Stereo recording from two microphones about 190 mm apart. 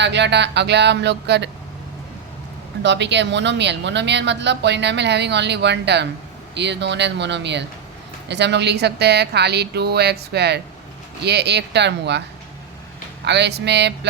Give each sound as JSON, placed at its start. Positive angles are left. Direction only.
{"t": 0.0, "sound": "speech", "side_deg": -65}
{"t": 2.8, "sound": "speech", "side_deg": -65}
{"t": 13.2, "sound": "speech", "side_deg": -65}